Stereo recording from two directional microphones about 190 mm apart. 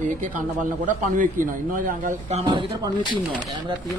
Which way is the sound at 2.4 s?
25° right (ahead or behind).